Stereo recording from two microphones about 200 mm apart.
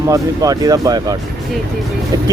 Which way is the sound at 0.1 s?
20° right (ahead or behind).